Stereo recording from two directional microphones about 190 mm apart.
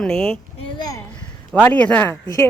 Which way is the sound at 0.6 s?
20° left (ahead or behind).